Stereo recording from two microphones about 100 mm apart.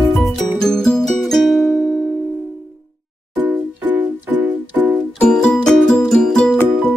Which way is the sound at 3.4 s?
15° right (ahead or behind).